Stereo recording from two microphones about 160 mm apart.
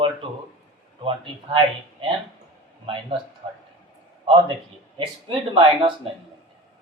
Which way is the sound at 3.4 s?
35° right (ahead or behind).